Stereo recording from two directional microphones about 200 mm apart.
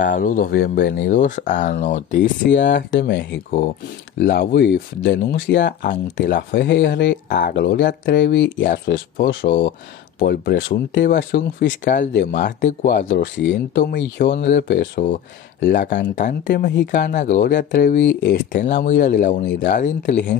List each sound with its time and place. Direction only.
0.0 s speech: 40° left (ahead or behind)
2.5 s speech: 65° left (ahead or behind)
7.2 s speech: 45° left (ahead or behind)
11.8 s speech: 40° left (ahead or behind)
12.9 s speech: 55° left (ahead or behind)
18.5 s speech: 40° left (ahead or behind)